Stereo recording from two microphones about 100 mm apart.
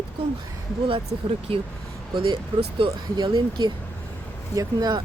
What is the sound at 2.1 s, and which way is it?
Speech, 55° right (ahead or behind).